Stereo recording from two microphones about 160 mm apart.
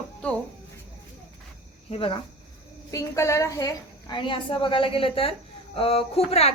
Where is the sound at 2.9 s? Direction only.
20° left (ahead or behind).